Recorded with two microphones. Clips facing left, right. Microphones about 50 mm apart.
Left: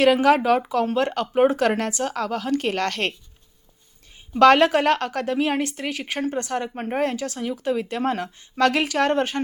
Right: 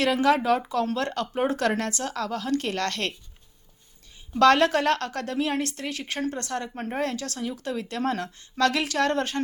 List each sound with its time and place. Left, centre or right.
0.0 s a woman's voice: left
4.4 s a woman's voice: left